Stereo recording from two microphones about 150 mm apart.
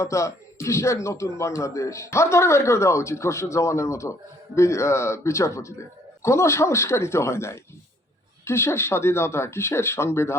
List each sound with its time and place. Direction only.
0.0 s speech: 20° left (ahead or behind)